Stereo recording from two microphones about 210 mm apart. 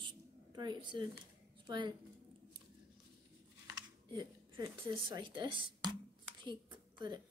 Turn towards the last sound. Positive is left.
turn(degrees=-20)  # may be behind; listen again after turning